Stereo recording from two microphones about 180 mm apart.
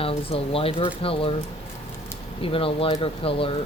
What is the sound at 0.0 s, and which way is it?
Speech, 30° left (ahead or behind).